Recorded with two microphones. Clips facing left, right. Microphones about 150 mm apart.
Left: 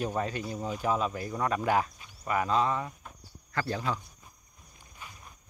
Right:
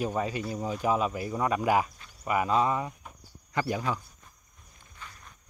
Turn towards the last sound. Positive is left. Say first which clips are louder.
# even
turn(degrees=15)  # may be behind; listen again after turning